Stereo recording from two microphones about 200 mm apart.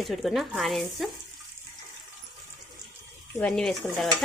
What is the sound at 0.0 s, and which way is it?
Speech, centre (ahead or behind).